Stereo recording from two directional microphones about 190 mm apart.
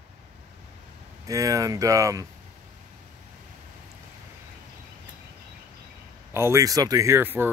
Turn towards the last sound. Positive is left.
turn(degrees=-10)  # may be behind; listen again after turning